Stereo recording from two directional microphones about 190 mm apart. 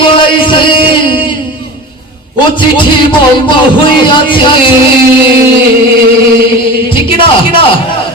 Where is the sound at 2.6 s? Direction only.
25° left (ahead or behind).